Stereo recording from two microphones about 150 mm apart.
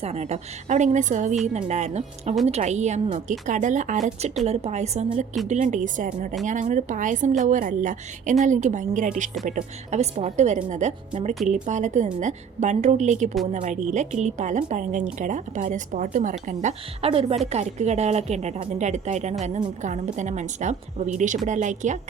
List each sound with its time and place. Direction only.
0.0 s a woman's voice: 45° right (ahead or behind)
17.1 s a woman's voice: 40° right (ahead or behind)